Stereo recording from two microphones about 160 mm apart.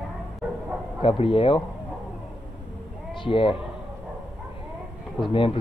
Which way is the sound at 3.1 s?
30° left (ahead or behind).